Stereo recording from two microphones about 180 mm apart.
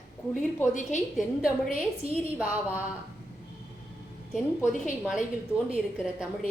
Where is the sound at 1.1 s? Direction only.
Centre (ahead or behind).